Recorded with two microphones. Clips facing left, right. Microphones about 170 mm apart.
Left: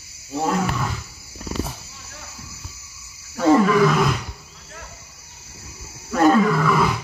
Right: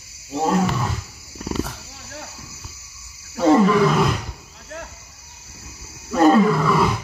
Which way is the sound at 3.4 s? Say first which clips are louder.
Right 1 dB; centre (ahead or behind).